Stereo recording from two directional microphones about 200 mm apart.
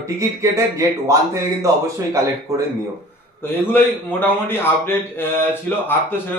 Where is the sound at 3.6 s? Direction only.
10° left (ahead or behind).